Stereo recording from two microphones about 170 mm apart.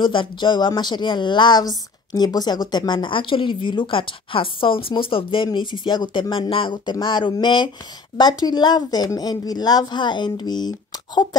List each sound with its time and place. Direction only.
0.0 s speech: 30° left (ahead or behind)